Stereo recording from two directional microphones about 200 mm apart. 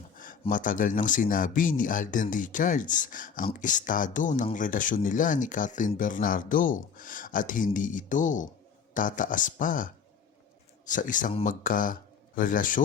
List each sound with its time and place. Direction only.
0.5 s speech: 40° left (ahead or behind)